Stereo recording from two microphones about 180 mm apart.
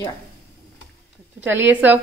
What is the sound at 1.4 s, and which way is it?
Speech, 10° right (ahead or behind).